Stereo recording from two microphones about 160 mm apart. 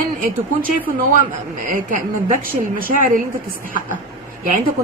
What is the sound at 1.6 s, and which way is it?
A woman's voice, 55° right (ahead or behind).